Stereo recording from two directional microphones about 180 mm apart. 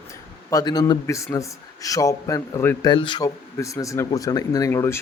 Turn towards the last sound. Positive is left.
turn(degrees=15)  # may be behind; listen again after turning